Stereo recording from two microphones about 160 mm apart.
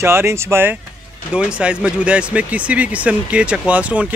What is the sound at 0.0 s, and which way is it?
Speech, 15° right (ahead or behind).